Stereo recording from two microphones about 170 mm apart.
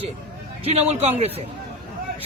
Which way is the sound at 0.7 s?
35° right (ahead or behind).